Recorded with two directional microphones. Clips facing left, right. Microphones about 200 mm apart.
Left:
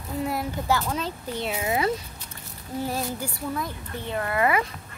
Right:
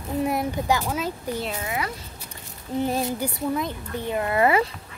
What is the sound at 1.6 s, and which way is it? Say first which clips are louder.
Speech: left 5 dB; 25° left (ahead or behind).